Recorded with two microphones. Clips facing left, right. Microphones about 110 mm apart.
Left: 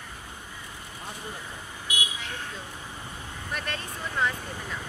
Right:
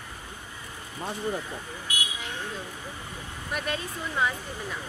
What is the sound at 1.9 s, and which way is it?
Vehicle, 20° left (ahead or behind).